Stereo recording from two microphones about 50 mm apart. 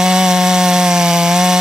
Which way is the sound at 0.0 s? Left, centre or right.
Centre.